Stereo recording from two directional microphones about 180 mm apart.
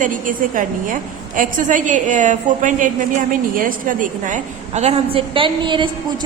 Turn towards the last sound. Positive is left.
turn(degrees=-25)  # may be behind; listen again after turning